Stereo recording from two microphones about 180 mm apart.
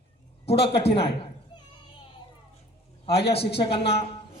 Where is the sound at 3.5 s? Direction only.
30° left (ahead or behind).